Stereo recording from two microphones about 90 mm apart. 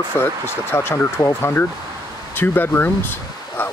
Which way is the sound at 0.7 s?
30° left (ahead or behind).